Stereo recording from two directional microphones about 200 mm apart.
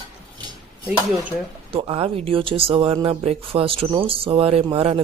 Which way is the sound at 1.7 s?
25° right (ahead or behind).